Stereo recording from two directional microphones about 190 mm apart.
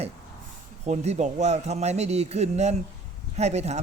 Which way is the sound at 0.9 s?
35° right (ahead or behind).